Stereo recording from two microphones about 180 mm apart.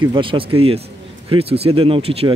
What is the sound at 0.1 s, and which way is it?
Speech, 30° right (ahead or behind).